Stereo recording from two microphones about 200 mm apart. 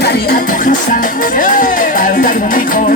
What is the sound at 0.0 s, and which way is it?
Speech, 50° left (ahead or behind).